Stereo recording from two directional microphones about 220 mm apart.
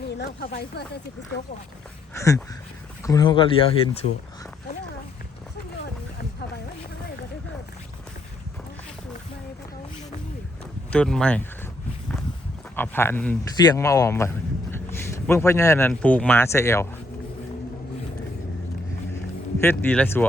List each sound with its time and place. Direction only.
0.2 s speech: 45° left (ahead or behind)
2.1 s speech: 15° left (ahead or behind)
10.9 s speech: 5° left (ahead or behind)
12.7 s speech: 10° left (ahead or behind)
19.6 s speech: 10° left (ahead or behind)